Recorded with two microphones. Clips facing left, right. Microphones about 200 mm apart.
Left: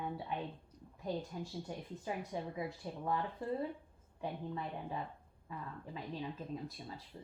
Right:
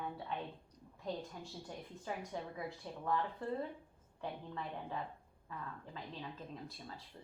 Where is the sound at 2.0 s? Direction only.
15° left (ahead or behind).